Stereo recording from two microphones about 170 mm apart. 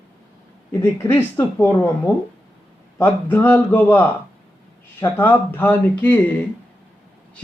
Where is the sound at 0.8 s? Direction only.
15° left (ahead or behind).